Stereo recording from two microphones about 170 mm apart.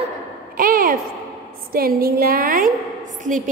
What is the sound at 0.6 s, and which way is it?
A woman's voice, 55° right (ahead or behind).